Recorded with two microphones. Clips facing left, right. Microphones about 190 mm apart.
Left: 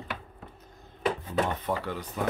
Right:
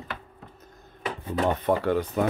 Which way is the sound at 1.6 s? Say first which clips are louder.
Right 8 dB; 60° right (ahead or behind).